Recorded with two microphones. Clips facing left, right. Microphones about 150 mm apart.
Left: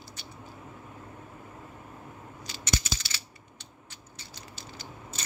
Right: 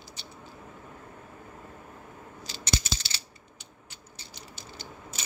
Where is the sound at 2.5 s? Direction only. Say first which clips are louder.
Even; 30° right (ahead or behind).